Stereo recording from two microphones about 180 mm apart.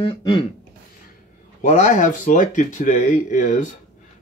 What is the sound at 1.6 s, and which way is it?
Speech, 40° left (ahead or behind).